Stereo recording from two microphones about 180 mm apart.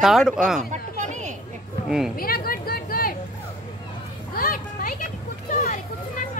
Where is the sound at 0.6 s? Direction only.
40° right (ahead or behind).